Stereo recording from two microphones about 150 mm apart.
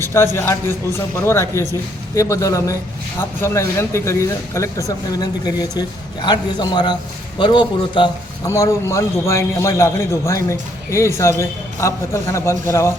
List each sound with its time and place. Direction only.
0.3 s a man's voice: 15° left (ahead or behind)
8.4 s a man's voice: 20° left (ahead or behind)